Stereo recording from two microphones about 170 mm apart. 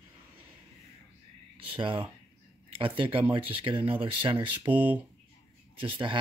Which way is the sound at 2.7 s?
30° right (ahead or behind).